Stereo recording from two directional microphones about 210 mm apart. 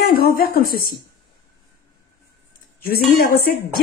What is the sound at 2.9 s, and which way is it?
Speech, 45° left (ahead or behind).